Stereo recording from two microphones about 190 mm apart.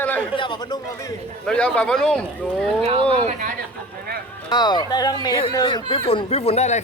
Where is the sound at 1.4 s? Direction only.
5° left (ahead or behind).